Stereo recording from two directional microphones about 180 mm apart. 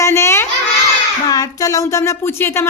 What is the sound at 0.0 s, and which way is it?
Child singing, 15° left (ahead or behind).